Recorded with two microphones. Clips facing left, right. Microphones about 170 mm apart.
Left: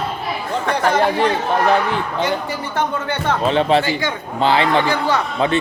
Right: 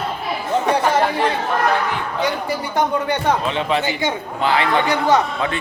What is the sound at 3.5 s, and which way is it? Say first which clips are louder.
Speech: left 5 dB; 35° left (ahead or behind).